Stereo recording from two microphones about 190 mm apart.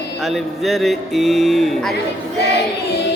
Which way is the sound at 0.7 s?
Centre (ahead or behind).